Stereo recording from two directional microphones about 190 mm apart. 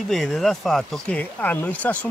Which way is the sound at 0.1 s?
Centre (ahead or behind).